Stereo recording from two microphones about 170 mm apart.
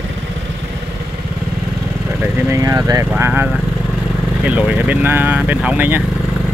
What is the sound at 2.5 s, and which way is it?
Speech, 15° right (ahead or behind).